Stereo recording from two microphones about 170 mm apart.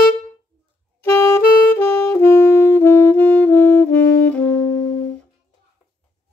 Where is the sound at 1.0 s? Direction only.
15° left (ahead or behind).